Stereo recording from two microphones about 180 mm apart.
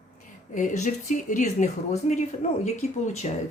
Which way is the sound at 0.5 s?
45° left (ahead or behind).